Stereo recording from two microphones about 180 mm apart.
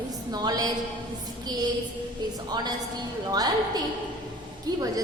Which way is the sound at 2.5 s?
20° right (ahead or behind).